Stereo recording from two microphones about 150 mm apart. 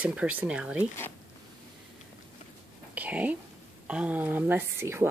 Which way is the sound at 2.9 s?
10° right (ahead or behind).